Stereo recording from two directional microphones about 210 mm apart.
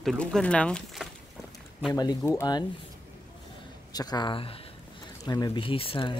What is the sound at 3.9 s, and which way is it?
Speech, 20° left (ahead or behind).